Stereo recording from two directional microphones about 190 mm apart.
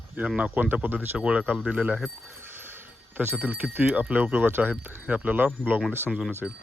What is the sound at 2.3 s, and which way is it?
Speech, 10° right (ahead or behind).